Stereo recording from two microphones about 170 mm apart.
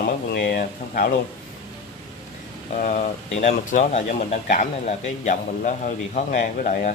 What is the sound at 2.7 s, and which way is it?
Speech, 45° left (ahead or behind).